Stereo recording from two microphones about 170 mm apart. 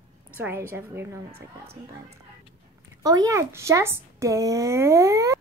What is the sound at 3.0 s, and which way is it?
Speech, 20° right (ahead or behind).